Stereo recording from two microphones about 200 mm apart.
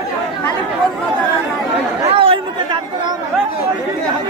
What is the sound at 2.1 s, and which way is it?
Chatter, 25° right (ahead or behind).